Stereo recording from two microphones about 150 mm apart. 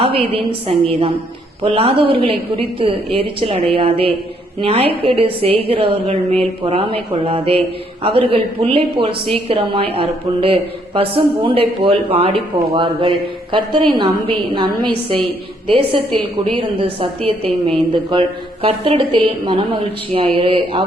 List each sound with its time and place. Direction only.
0.0 s a woman's voice: 40° right (ahead or behind)